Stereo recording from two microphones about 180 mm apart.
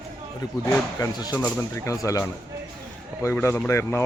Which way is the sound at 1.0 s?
20° left (ahead or behind).